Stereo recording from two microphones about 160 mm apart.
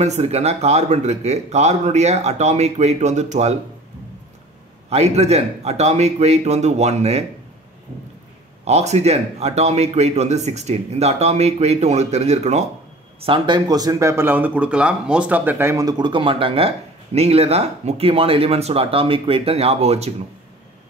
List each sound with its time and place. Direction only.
0.0 s a man's voice: 45° right (ahead or behind)
4.8 s a man's voice: 40° right (ahead or behind)
8.6 s a man's voice: 45° right (ahead or behind)
13.2 s speech: 30° right (ahead or behind)